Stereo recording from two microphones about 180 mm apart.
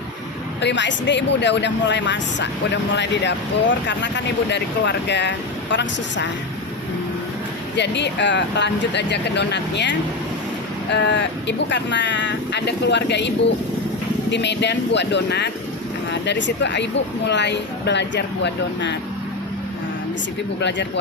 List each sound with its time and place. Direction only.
0.6 s speech: 80° left
7.8 s speech: 75° left (ahead or behind)
10.9 s speech: 80° left
20.6 s speech: 75° left (ahead or behind)